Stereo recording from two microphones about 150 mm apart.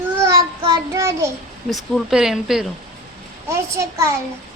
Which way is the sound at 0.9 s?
20° right (ahead or behind).